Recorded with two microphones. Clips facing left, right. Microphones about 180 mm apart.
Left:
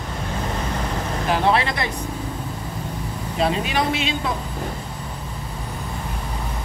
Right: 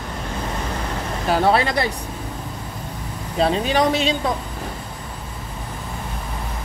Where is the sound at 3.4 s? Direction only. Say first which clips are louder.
Right 4 dB; 35° right (ahead or behind).